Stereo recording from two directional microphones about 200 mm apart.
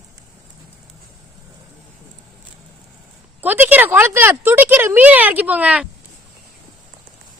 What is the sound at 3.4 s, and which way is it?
Speech, 10° right (ahead or behind).